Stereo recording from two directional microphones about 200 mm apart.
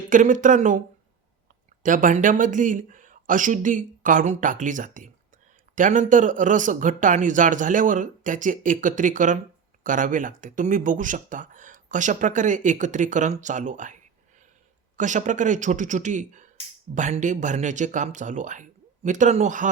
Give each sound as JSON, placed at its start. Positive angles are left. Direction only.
{"t": 0.1, "sound": "speech", "side_deg": -40}
{"t": 1.8, "sound": "speech", "side_deg": -40}